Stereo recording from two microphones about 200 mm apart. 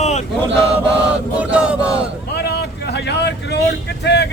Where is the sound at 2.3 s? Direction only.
55° left (ahead or behind).